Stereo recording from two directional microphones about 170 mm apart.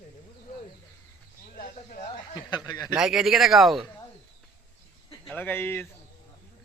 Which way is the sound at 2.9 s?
5° right (ahead or behind).